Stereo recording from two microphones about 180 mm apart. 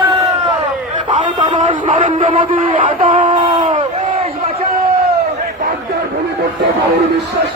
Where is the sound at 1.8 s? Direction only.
45° right (ahead or behind).